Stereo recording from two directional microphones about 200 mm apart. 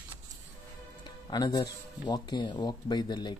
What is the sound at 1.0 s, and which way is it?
Speech, 20° left (ahead or behind).